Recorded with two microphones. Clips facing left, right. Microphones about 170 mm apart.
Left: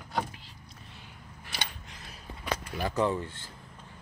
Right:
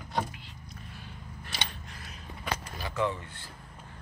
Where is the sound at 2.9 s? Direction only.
35° left (ahead or behind).